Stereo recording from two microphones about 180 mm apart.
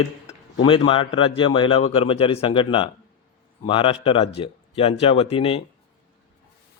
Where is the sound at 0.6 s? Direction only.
25° left (ahead or behind).